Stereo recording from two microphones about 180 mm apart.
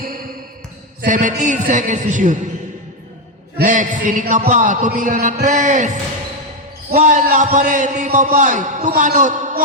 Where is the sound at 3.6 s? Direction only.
45° right (ahead or behind).